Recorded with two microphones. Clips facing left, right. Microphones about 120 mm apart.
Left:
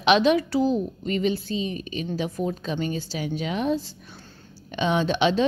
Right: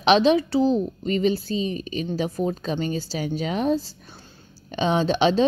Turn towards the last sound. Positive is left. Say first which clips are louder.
# right 2 dB
turn(degrees=-35)  # may be behind; listen again after turning